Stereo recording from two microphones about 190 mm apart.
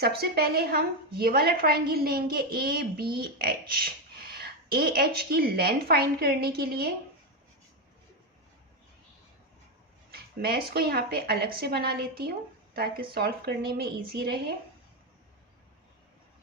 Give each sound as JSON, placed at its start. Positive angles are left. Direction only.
{"t": 0.0, "sound": "a woman's voice", "side_deg": -55}
{"t": 10.1, "sound": "a woman's voice", "side_deg": -55}